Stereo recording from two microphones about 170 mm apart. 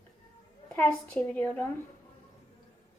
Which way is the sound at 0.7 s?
10° left (ahead or behind).